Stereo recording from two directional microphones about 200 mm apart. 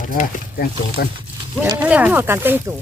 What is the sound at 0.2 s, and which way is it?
Speech, 45° left (ahead or behind).